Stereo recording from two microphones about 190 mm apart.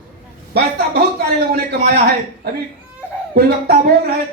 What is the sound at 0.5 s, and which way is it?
Speech, 55° right (ahead or behind).